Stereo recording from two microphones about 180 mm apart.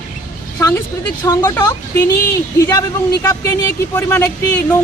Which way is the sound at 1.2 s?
20° left (ahead or behind).